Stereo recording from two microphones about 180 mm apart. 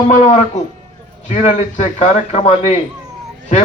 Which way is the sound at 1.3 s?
40° left (ahead or behind).